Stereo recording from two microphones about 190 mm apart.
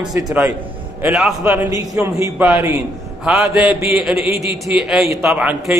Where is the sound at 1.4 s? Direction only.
15° right (ahead or behind).